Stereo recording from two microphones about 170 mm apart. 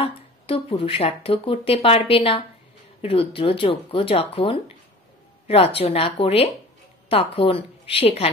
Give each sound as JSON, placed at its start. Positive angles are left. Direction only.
{"t": 0.0, "sound": "a woman's voice", "side_deg": 35}